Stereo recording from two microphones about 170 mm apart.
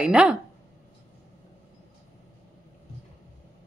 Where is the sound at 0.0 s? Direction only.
5° right (ahead or behind).